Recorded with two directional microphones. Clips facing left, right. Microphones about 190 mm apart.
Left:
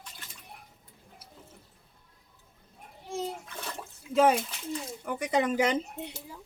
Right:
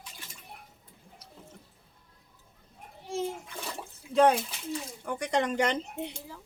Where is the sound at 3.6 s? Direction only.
10° right (ahead or behind).